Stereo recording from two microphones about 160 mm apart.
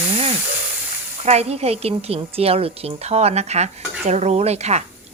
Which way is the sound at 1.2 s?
40° right (ahead or behind).